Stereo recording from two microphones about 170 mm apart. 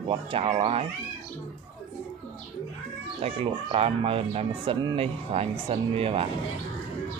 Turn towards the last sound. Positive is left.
turn(degrees=-35)  # may be behind; listen again after turning